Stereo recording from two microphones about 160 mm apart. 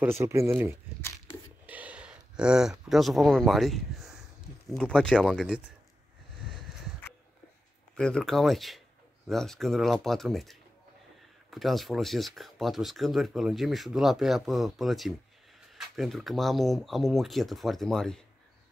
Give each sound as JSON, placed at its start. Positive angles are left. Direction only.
{"t": 0.0, "sound": "speech", "side_deg": -15}
{"t": 1.7, "sound": "a sound", "side_deg": -10}
{"t": 2.9, "sound": "speech", "side_deg": 0}
{"t": 7.9, "sound": "speech", "side_deg": 5}